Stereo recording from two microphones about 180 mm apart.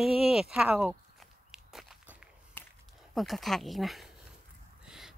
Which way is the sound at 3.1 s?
Centre (ahead or behind).